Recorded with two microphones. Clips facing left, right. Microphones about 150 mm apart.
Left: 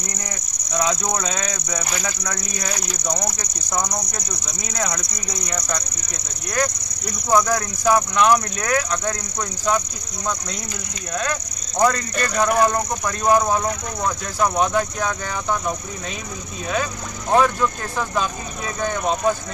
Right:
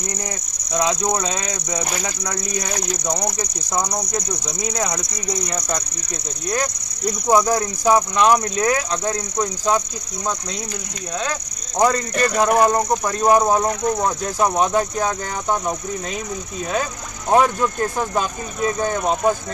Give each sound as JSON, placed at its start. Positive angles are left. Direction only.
{"t": 0.7, "sound": "speech", "side_deg": -20}
{"t": 4.7, "sound": "speech", "side_deg": -25}
{"t": 7.2, "sound": "speech", "side_deg": -20}
{"t": 11.8, "sound": "speech", "side_deg": -20}
{"t": 17.3, "sound": "speech", "side_deg": -20}